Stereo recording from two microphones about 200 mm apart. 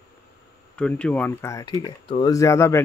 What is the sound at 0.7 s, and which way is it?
Speech, 5° left (ahead or behind).